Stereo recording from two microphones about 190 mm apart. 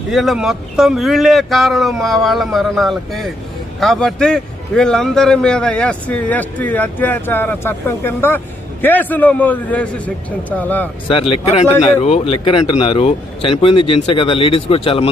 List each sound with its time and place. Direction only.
0.1 s a man's voice: centre (ahead or behind)
11.1 s speech: 30° left (ahead or behind)